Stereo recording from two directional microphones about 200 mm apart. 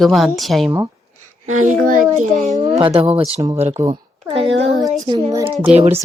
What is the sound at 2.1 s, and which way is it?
Speech, 35° right (ahead or behind).